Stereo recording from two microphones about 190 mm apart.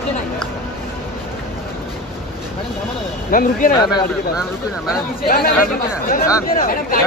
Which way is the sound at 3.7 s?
25° left (ahead or behind).